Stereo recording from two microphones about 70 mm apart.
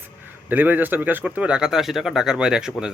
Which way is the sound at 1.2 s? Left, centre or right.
Centre.